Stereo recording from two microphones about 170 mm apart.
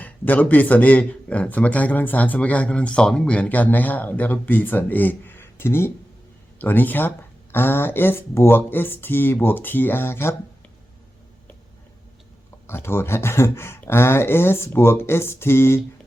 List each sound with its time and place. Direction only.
0.0 s speech: 10° left (ahead or behind)
12.6 s speech: 15° left (ahead or behind)